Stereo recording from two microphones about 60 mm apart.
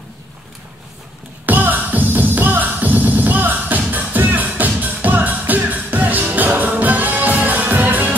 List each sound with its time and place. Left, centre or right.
1.4 s music: right